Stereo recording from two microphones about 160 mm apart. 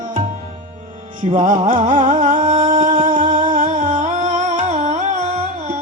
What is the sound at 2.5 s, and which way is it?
Singing, 55° right (ahead or behind).